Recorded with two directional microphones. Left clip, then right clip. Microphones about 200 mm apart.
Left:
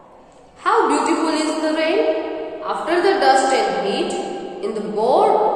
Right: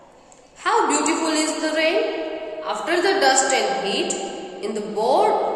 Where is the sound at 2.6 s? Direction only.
15° right (ahead or behind).